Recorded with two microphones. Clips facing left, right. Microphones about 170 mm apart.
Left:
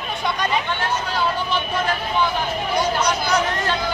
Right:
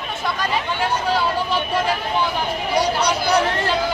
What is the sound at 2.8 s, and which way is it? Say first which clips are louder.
Speech: right 2 dB; 35° right (ahead or behind).